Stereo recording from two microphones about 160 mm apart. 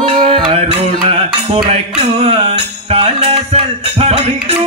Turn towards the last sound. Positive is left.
turn(degrees=-40)  # may be behind; listen again after turning